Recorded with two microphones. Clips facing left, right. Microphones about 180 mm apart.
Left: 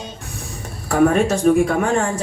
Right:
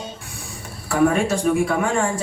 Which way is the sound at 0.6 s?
45° left (ahead or behind).